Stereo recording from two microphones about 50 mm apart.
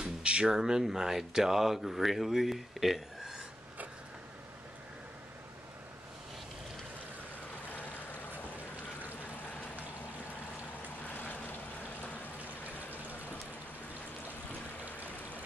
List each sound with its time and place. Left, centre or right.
0.0 s a sound: centre
0.5 s speech: centre
11.1 s vehicle: left